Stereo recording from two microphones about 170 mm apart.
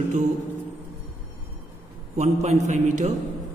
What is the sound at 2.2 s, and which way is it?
Speech, 40° right (ahead or behind).